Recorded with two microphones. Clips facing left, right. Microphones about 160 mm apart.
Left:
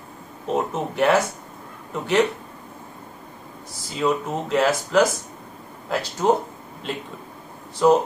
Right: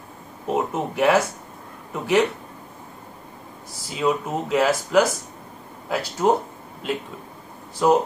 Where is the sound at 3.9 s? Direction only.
5° right (ahead or behind).